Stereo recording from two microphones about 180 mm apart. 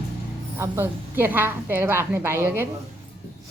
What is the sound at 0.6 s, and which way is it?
A woman's voice, 15° right (ahead or behind).